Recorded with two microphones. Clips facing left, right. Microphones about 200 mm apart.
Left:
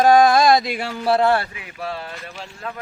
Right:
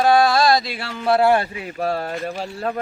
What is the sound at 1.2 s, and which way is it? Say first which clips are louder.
Speech: right 3 dB; 15° right (ahead or behind).